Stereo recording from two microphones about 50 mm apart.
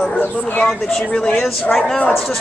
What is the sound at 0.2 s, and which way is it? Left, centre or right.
Speech, left.